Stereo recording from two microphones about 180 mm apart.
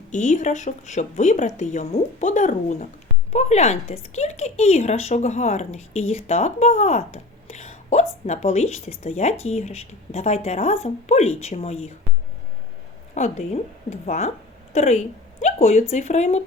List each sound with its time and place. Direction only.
0.1 s speech: 40° left (ahead or behind)
13.1 s a woman's voice: 40° left (ahead or behind)